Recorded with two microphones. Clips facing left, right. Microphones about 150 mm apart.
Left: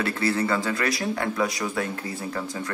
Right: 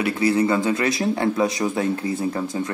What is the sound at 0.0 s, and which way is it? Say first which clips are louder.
Speech: right 5 dB; 15° right (ahead or behind).